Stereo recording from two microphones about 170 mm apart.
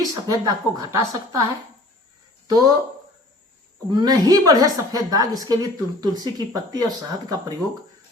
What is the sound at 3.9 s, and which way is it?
A woman's voice, 25° right (ahead or behind).